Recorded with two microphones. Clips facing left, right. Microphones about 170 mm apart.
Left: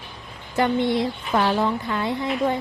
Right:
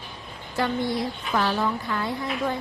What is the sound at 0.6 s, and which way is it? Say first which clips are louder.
A woman's voice: left 5 dB; 25° left (ahead or behind).